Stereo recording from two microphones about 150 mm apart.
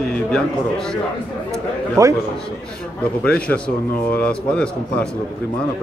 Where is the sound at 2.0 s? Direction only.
20° right (ahead or behind).